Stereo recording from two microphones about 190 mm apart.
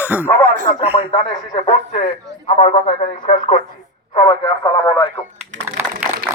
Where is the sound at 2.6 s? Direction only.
30° left (ahead or behind).